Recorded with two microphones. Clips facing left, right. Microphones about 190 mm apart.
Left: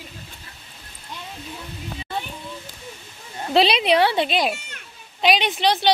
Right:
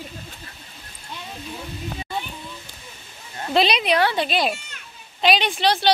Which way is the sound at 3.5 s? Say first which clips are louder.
Left 2 dB; 30° left (ahead or behind).